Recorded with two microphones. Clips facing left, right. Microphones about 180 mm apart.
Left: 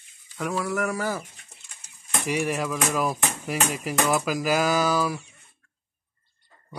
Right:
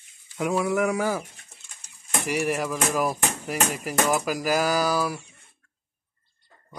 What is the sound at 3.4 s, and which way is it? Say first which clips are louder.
Music: left 1 dB; 10° left (ahead or behind).